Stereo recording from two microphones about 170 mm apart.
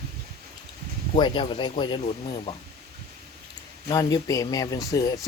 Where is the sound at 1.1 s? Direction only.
25° left (ahead or behind).